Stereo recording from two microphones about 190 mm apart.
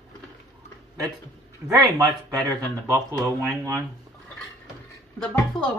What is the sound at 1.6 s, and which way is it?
Speech, 15° right (ahead or behind).